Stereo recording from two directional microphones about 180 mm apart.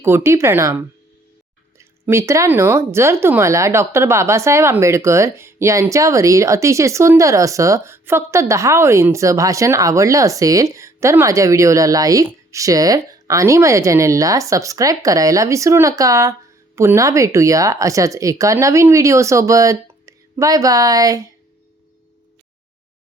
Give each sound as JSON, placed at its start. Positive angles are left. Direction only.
{"t": 0.0, "sound": "speech", "side_deg": -15}
{"t": 1.8, "sound": "speech", "side_deg": -15}